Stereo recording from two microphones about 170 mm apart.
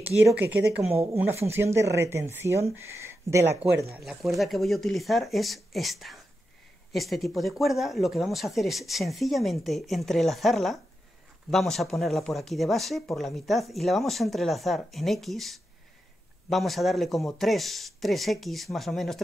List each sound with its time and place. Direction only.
0.0 s speech: 10° right (ahead or behind)
3.9 s speech: 5° right (ahead or behind)